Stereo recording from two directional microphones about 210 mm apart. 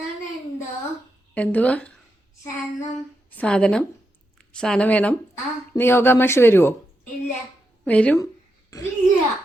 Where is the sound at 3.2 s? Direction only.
5° left (ahead or behind).